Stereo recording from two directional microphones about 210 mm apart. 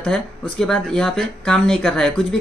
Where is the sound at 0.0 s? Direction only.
5° left (ahead or behind).